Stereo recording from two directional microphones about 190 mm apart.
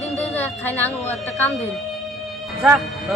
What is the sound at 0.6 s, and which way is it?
Speech, 10° left (ahead or behind).